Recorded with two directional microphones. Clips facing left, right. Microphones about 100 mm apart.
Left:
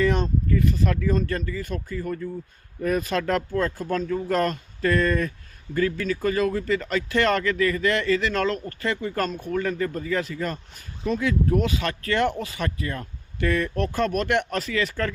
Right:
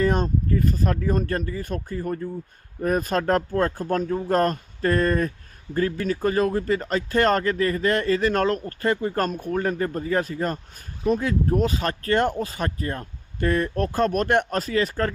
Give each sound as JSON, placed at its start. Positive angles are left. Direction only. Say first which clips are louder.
{"t": 0.0, "sound": "speech", "louder": "right 1 dB", "side_deg": -40}